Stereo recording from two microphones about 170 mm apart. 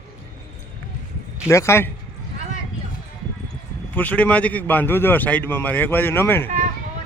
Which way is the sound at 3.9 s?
10° left (ahead or behind).